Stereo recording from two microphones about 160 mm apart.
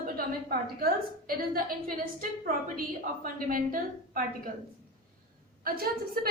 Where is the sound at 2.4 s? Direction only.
60° right (ahead or behind).